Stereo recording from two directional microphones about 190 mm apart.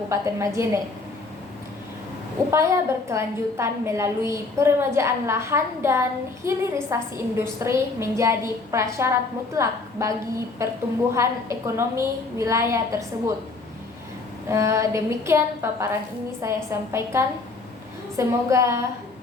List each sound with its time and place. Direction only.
0.1 s a woman's voice: 15° right (ahead or behind)
2.5 s a woman's voice: 15° right (ahead or behind)
14.5 s a woman's voice: 15° right (ahead or behind)